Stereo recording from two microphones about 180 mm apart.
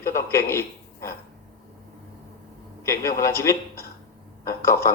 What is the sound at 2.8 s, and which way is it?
Speech, 15° left (ahead or behind).